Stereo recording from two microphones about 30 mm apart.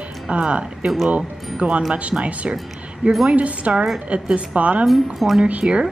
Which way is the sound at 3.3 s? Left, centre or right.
Right.